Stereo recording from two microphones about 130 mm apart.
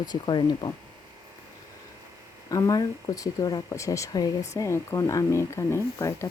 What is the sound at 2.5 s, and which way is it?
Speech, 25° left (ahead or behind).